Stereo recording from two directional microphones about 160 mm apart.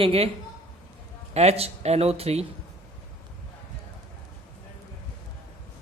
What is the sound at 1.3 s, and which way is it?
Speech, 40° right (ahead or behind).